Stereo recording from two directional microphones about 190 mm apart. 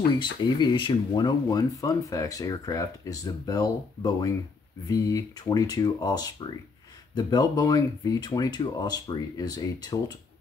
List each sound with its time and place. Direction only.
0.2 s speech: 25° left (ahead or behind)